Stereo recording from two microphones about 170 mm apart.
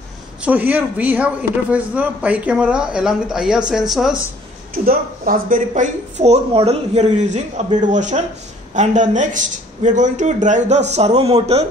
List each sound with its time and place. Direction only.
0.4 s speech: 10° right (ahead or behind)
4.7 s speech: 55° right (ahead or behind); by 11.6 s 40° right (ahead or behind)